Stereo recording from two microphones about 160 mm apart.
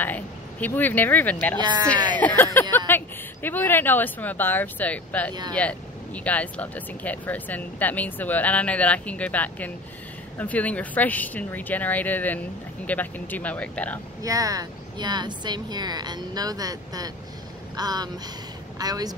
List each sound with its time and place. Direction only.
0.0 s speech: 10° left (ahead or behind)
1.6 s speech: 25° right (ahead or behind)
2.1 s speech: 10° left (ahead or behind)
2.9 s a sound: 15° left (ahead or behind)
3.4 s speech: 15° left (ahead or behind)
14.2 s speech: 20° right (ahead or behind)